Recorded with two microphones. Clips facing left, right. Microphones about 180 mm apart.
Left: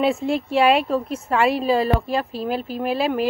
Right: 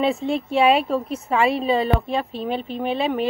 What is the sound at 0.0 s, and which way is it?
Speech, 5° left (ahead or behind).